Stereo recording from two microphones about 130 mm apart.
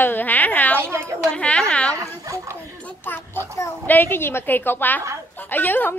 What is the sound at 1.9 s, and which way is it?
Dog, 25° right (ahead or behind).